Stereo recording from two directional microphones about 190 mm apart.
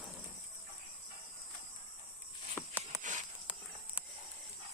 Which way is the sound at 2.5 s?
5° left (ahead or behind).